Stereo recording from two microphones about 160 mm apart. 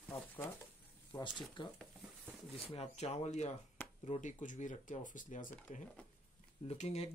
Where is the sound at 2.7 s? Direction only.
40° left (ahead or behind); by 5.8 s 55° left (ahead or behind).